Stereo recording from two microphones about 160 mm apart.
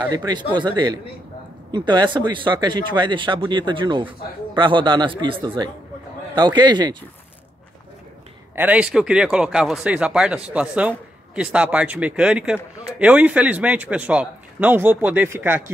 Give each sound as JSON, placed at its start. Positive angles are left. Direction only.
{"t": 0.1, "sound": "speech", "side_deg": -25}
{"t": 8.5, "sound": "a man's voice", "side_deg": -10}